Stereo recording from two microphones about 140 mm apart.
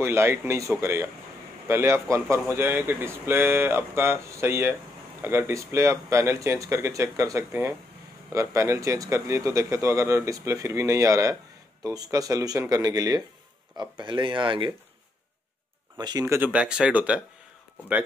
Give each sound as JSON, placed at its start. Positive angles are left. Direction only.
{"t": 0.0, "sound": "speech", "side_deg": -20}
{"t": 16.0, "sound": "speech", "side_deg": -30}
{"t": 16.3, "sound": "speech", "side_deg": -15}